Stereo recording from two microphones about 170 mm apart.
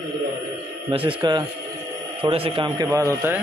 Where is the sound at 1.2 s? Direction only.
25° right (ahead or behind).